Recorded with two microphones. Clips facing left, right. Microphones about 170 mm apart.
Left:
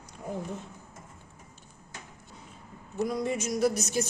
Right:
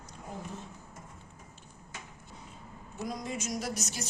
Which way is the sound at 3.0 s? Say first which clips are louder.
Left 5 dB; 60° left (ahead or behind).